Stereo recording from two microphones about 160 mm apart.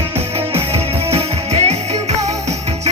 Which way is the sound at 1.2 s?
40° right (ahead or behind).